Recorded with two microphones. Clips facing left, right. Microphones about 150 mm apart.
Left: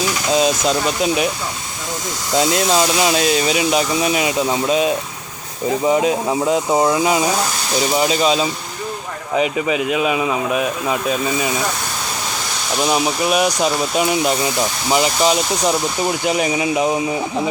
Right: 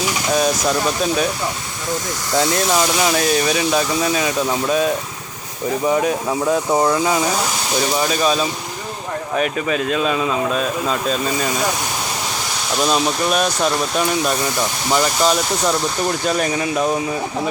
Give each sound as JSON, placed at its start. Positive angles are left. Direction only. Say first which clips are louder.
{"t": 0.3, "sound": "speech", "louder": "left 2 dB", "side_deg": 20}
{"t": 2.3, "sound": "speech", "louder": "left 1 dB", "side_deg": 20}
{"t": 12.8, "sound": "speech", "louder": "even", "side_deg": 10}